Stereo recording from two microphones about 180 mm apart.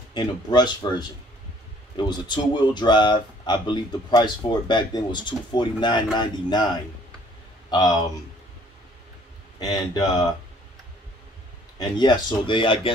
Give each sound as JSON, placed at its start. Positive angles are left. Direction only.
{"t": 0.1, "sound": "speech", "side_deg": 25}
{"t": 7.7, "sound": "speech", "side_deg": 20}
{"t": 9.6, "sound": "speech", "side_deg": 20}
{"t": 11.8, "sound": "speech", "side_deg": 25}